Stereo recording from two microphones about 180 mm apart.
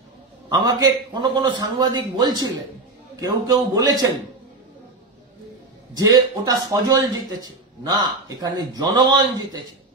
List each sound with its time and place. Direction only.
0.5 s speech: 20° right (ahead or behind)
5.9 s speech: 20° right (ahead or behind)